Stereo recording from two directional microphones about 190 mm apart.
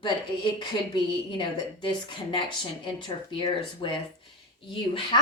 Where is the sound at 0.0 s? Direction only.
25° left (ahead or behind).